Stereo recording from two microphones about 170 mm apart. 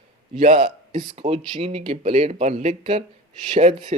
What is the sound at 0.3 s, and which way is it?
Speech, 50° right (ahead or behind).